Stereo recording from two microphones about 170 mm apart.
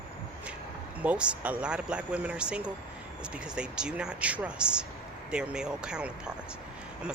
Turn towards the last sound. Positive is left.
turn(degrees=-5)  # may be behind; listen again after turning